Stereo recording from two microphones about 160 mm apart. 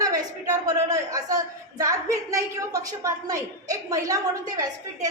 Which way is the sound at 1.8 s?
20° right (ahead or behind).